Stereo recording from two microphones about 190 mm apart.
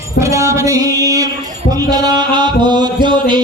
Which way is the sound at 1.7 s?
20° right (ahead or behind).